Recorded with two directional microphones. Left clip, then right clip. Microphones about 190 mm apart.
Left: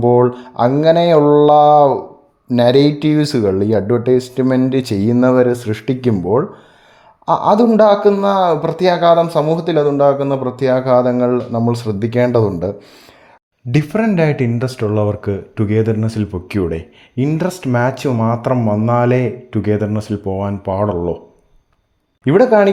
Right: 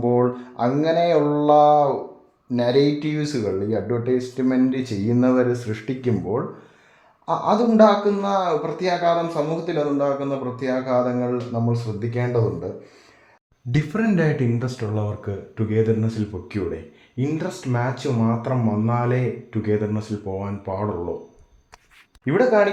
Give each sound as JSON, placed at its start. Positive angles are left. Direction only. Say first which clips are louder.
{"t": 0.0, "sound": "speech", "louder": "left 8 dB", "side_deg": 40}
{"t": 7.3, "sound": "speech", "louder": "left 8 dB", "side_deg": 45}
{"t": 13.7, "sound": "speech", "louder": "left 7 dB", "side_deg": 30}
{"t": 22.2, "sound": "speech", "louder": "left 7 dB", "side_deg": 45}